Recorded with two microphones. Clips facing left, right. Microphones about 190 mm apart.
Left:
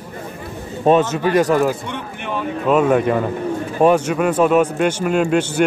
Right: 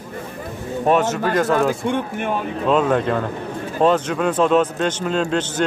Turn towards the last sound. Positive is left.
turn(degrees=10)  # may be behind; listen again after turning